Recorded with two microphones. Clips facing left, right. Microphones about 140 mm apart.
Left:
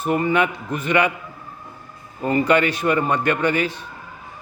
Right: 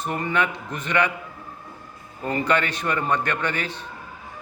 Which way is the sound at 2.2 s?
10° left (ahead or behind).